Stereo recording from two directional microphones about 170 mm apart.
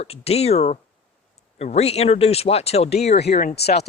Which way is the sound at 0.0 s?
35° left (ahead or behind).